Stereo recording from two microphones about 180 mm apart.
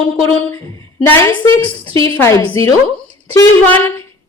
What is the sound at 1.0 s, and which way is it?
A woman's voice, 15° left (ahead or behind).